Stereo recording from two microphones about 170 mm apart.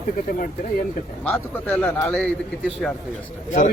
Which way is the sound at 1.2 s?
10° left (ahead or behind).